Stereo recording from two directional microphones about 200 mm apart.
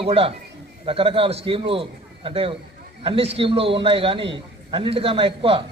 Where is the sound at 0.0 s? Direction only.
30° right (ahead or behind).